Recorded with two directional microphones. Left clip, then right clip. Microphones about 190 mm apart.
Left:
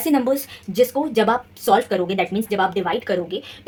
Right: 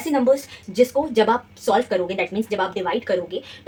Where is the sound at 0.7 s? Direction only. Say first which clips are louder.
Even; 45° left (ahead or behind).